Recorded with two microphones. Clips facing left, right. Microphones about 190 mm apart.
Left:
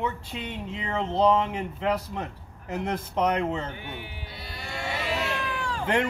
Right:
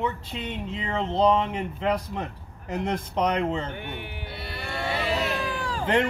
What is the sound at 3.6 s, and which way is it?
Sheep, 60° right (ahead or behind).